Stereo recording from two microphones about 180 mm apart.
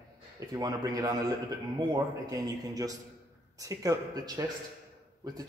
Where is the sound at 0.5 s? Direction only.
20° right (ahead or behind).